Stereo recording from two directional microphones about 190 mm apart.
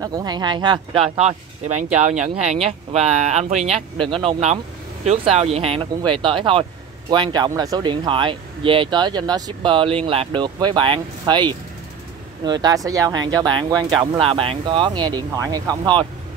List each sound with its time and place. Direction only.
0.0 s speech: 20° right (ahead or behind)
12.6 s speech: 20° right (ahead or behind)